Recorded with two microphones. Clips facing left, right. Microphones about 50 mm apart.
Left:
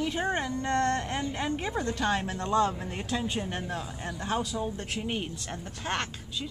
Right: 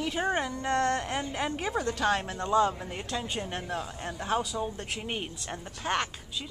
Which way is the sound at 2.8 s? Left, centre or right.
Centre.